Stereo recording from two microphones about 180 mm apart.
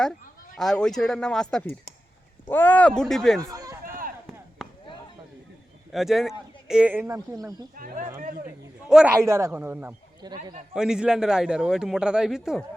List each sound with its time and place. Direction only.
0.5 s a man's voice: 5° left (ahead or behind)
3.4 s run: 20° right (ahead or behind)
3.8 s chop: 50° right (ahead or behind)
5.9 s a man's voice: centre (ahead or behind); by 7.5 s 20° right (ahead or behind)
7.8 s speech: 50° right (ahead or behind)
8.4 s a man's voice: 5° right (ahead or behind)